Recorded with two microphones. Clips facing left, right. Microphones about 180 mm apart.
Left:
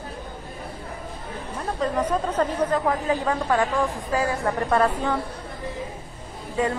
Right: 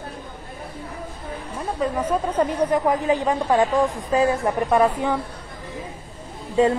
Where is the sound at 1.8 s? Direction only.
10° right (ahead or behind).